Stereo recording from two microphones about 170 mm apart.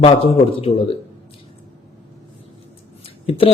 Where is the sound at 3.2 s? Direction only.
35° left (ahead or behind).